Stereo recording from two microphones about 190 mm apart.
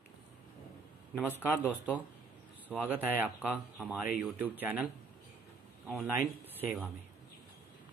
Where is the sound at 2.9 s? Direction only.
10° right (ahead or behind).